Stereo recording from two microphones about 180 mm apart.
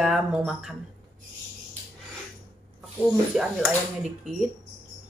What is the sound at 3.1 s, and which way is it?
Speech, centre (ahead or behind).